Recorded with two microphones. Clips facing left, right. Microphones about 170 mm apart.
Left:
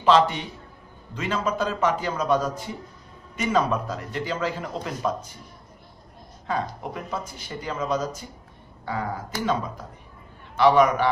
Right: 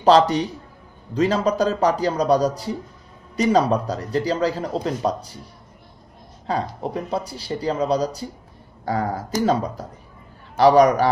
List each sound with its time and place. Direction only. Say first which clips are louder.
0.0 s speech: right 4 dB; 40° right (ahead or behind)
6.4 s a man's voice: right 4 dB; 35° right (ahead or behind)